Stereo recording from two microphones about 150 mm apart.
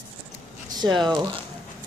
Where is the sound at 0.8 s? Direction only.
30° right (ahead or behind).